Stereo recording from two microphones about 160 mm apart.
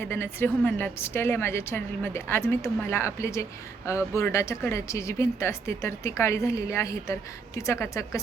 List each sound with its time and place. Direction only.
0.0 s a woman's voice: 15° left (ahead or behind)